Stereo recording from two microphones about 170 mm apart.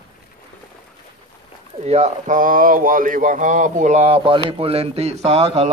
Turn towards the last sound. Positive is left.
turn(degrees=-35)  # may be behind; listen again after turning